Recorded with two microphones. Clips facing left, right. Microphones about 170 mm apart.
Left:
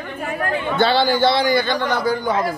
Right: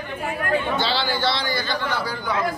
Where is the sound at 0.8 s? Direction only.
50° left (ahead or behind).